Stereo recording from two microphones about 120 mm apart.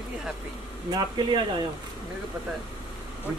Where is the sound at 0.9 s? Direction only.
40° right (ahead or behind).